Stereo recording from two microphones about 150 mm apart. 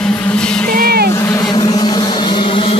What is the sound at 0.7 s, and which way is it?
Vehicle, 85° right.